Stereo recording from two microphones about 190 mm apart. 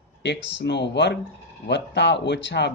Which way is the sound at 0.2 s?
65° left (ahead or behind).